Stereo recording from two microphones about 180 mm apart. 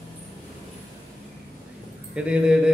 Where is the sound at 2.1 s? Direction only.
5° right (ahead or behind).